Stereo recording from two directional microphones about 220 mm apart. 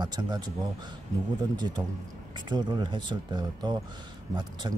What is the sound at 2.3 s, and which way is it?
Speech, 20° right (ahead or behind).